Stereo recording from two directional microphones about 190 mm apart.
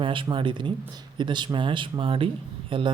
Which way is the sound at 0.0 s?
25° right (ahead or behind).